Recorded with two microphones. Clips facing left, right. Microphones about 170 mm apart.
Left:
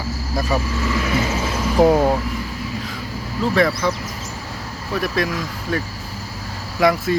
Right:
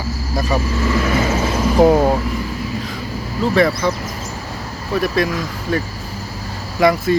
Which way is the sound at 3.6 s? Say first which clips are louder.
Right 3 dB; centre (ahead or behind).